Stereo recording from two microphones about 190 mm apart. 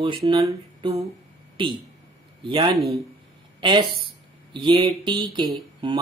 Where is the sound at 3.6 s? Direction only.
25° right (ahead or behind).